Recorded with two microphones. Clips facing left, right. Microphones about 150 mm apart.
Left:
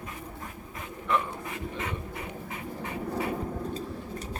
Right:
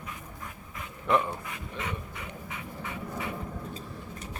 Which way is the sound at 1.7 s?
40° left (ahead or behind).